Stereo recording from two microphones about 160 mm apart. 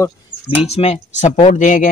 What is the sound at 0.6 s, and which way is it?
Speech, 40° left (ahead or behind).